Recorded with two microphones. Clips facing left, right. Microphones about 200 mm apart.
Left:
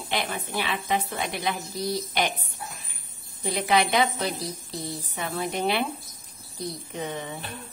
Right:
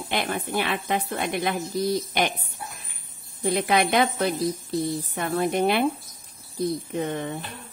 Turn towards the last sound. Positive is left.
turn(degrees=-55)  # may be behind; listen again after turning